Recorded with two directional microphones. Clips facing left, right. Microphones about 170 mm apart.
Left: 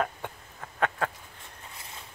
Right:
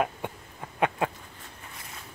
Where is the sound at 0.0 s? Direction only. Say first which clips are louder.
Right 2 dB; 15° right (ahead or behind).